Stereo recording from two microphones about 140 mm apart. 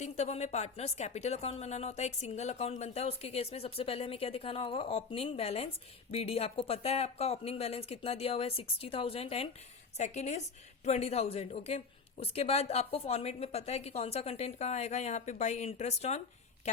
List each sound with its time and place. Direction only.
0.0 s a woman's voice: 50° left (ahead or behind)
10.0 s a woman's voice: 55° left (ahead or behind)